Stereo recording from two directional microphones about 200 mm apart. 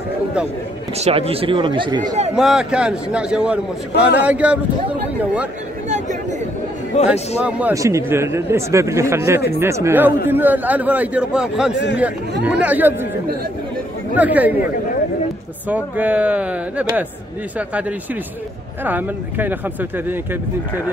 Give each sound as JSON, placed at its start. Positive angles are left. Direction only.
{"t": 0.9, "sound": "speech", "side_deg": -30}
{"t": 2.3, "sound": "a man's voice", "side_deg": 0}
{"t": 5.9, "sound": "a sound", "side_deg": -35}
{"t": 7.1, "sound": "a man's voice", "side_deg": -5}
{"t": 11.7, "sound": "speech", "side_deg": 60}
{"t": 12.4, "sound": "a man's voice", "side_deg": -5}
{"t": 14.1, "sound": "a man's voice", "side_deg": -10}
{"t": 15.7, "sound": "a man's voice", "side_deg": -5}